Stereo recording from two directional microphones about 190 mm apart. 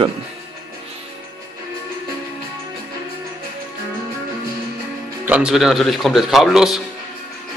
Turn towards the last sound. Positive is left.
turn(degrees=0)  # may be behind; listen again after turning